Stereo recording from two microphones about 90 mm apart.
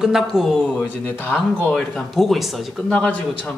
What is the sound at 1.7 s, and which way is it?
Speech, centre (ahead or behind).